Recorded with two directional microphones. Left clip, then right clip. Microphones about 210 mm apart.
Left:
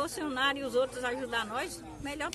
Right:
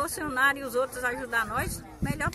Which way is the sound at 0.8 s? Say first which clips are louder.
Right 3 dB; 20° left (ahead or behind).